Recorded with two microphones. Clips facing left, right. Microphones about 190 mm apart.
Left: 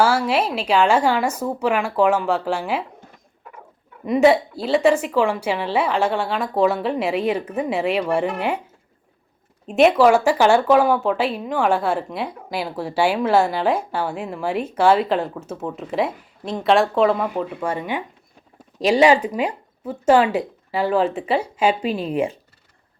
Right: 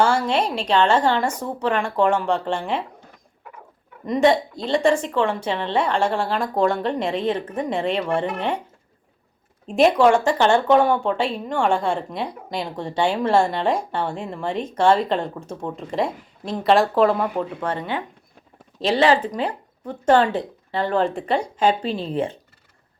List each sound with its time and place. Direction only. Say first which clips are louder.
0.0 s a woman's voice: left 1 dB; 5° left (ahead or behind)
4.0 s a woman's voice: left 2 dB; 5° left (ahead or behind)
9.6 s a woman's voice: left 1 dB; centre (ahead or behind)